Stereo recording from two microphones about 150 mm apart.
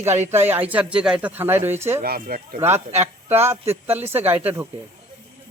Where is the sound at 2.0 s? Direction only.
90° right.